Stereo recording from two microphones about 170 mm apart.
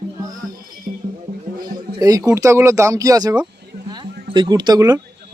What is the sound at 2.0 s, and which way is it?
Speech, 20° right (ahead or behind).